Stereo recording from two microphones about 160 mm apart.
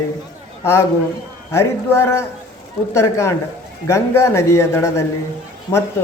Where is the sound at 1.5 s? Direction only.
15° left (ahead or behind).